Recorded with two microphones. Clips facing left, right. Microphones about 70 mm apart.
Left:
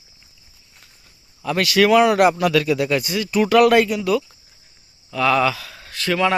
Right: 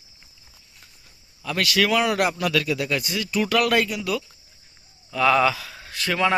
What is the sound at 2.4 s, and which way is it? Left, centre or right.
Speech, left.